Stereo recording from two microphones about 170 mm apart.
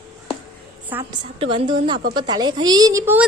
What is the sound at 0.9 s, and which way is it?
Speech, 20° right (ahead or behind).